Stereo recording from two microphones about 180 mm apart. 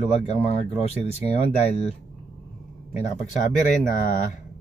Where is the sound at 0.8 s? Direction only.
35° left (ahead or behind).